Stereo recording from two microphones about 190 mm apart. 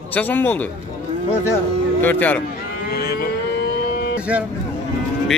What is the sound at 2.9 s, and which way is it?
Cattle, 60° left (ahead or behind).